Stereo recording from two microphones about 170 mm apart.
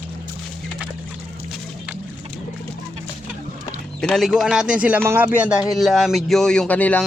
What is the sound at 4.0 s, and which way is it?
Speech, 5° left (ahead or behind).